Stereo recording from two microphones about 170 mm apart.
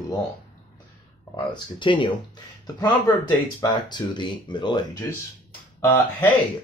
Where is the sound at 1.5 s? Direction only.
30° left (ahead or behind).